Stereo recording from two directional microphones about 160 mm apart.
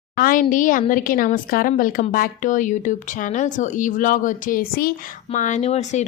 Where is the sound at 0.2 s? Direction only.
60° left (ahead or behind).